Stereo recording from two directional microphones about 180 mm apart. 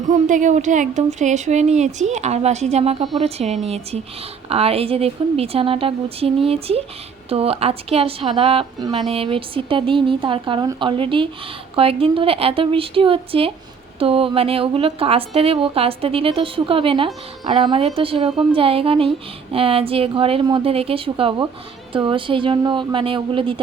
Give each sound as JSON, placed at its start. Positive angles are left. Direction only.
{"t": 0.1, "sound": "a woman's voice", "side_deg": -45}